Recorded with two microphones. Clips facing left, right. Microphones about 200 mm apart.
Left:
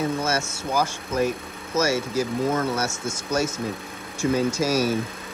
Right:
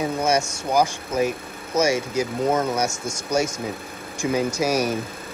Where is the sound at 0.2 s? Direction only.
15° right (ahead or behind).